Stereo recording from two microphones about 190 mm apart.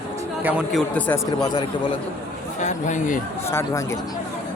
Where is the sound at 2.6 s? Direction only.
40° left (ahead or behind).